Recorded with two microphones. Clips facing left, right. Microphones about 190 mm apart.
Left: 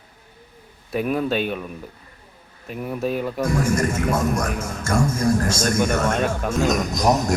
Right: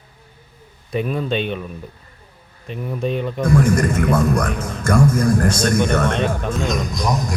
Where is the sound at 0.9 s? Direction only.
5° left (ahead or behind).